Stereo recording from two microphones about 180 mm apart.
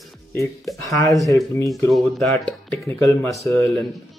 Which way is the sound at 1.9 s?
Centre (ahead or behind).